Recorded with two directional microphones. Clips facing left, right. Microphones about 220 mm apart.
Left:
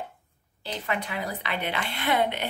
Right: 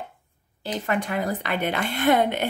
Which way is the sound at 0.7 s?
45° right (ahead or behind).